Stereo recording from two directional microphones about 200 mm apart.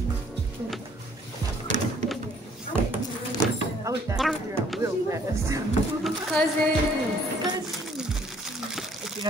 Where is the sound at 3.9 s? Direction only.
15° right (ahead or behind).